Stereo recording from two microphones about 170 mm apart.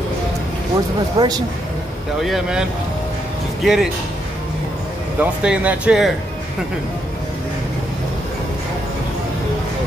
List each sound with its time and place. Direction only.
1.1 s speech: 20° right (ahead or behind)
2.2 s speech: centre (ahead or behind)
3.6 s speech: 5° right (ahead or behind)
5.2 s speech: 5° right (ahead or behind)